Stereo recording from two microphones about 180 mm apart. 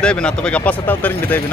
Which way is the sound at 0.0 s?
5° left (ahead or behind).